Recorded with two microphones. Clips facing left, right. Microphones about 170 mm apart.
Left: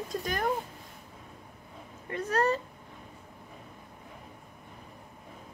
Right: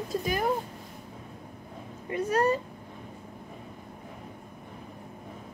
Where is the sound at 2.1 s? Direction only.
10° right (ahead or behind).